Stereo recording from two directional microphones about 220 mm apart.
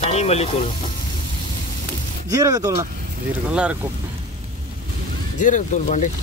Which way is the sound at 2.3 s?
15° right (ahead or behind).